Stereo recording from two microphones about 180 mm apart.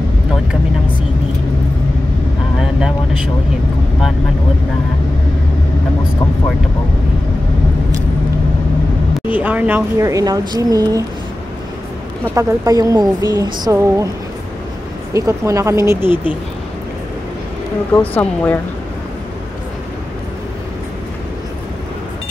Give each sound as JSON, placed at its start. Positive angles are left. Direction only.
{"t": 2.6, "sound": "vehicle", "side_deg": -5}
{"t": 9.3, "sound": "speech", "side_deg": -10}
{"t": 12.4, "sound": "speech", "side_deg": -15}
{"t": 15.1, "sound": "speech", "side_deg": -15}
{"t": 17.9, "sound": "speech", "side_deg": 10}